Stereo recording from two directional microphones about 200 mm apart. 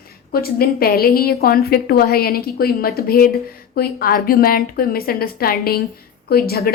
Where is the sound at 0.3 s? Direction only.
50° left (ahead or behind).